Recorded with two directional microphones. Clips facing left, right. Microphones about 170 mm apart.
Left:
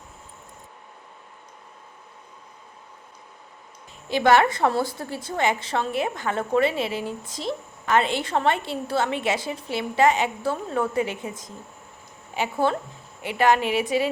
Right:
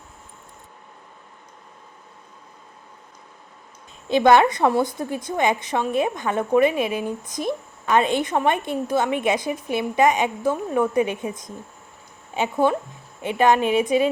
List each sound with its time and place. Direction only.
4.1 s a woman's voice: 20° right (ahead or behind)